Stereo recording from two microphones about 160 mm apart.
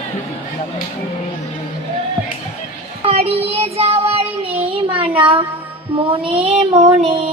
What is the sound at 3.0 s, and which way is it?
Child singing, 40° right (ahead or behind).